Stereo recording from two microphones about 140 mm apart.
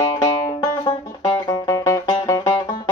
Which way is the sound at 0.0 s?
25° left (ahead or behind).